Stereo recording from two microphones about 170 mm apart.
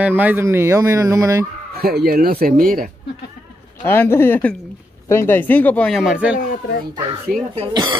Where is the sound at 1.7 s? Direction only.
65° right (ahead or behind).